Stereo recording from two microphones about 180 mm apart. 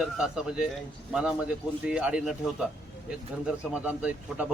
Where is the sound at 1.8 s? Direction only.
5° right (ahead or behind).